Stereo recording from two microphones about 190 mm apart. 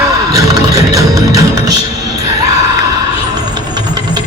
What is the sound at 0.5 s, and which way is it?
Music, 20° right (ahead or behind).